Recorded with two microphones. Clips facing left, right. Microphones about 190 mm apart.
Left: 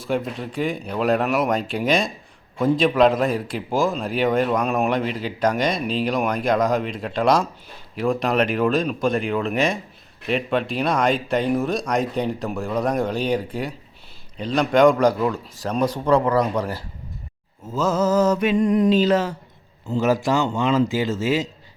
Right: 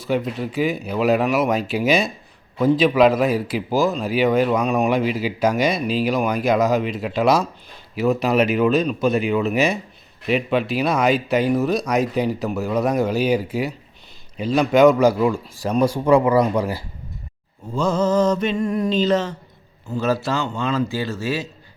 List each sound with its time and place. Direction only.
0.0 s a man's voice: centre (ahead or behind)
17.7 s speech: 5° left (ahead or behind)
18.5 s a sound: 20° left (ahead or behind)
18.9 s speech: 10° left (ahead or behind)